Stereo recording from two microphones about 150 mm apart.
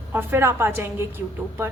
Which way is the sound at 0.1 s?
15° right (ahead or behind).